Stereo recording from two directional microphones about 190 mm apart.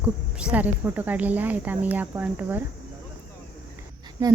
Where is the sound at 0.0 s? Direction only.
5° right (ahead or behind).